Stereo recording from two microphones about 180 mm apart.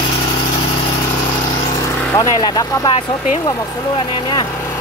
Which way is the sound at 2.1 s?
20° left (ahead or behind).